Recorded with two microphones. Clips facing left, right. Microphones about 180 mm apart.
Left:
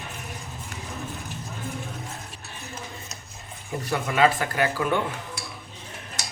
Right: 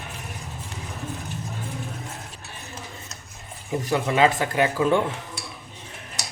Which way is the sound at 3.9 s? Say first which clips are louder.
Right 1 dB; 25° right (ahead or behind).